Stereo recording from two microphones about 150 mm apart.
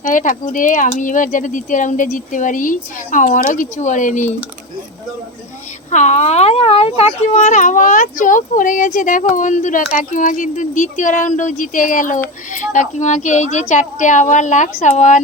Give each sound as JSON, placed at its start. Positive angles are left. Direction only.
{"t": 0.0, "sound": "a child's voice", "side_deg": 60}
{"t": 5.9, "sound": "a child's voice", "side_deg": 50}